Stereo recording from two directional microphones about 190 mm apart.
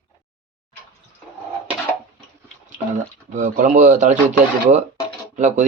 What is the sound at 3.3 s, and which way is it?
A man's voice, 40° right (ahead or behind).